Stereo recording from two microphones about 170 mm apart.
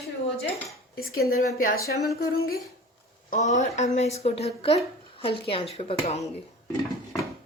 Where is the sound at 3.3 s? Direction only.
45° left (ahead or behind).